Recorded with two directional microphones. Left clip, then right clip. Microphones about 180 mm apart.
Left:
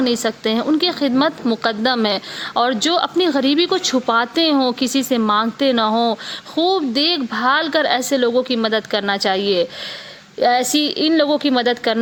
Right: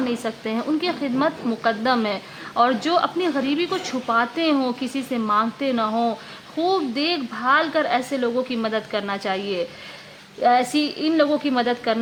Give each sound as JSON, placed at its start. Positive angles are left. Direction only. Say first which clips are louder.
{"t": 0.0, "sound": "a woman's voice", "louder": "left 7 dB", "side_deg": 25}